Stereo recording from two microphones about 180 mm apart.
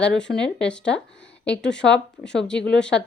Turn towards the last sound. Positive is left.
turn(degrees=5)  # may be behind; listen again after turning